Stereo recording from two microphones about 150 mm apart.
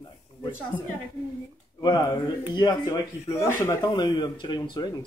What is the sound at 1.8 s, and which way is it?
Speech, 30° left (ahead or behind).